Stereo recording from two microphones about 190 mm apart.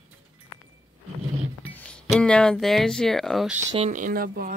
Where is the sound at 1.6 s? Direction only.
5° left (ahead or behind).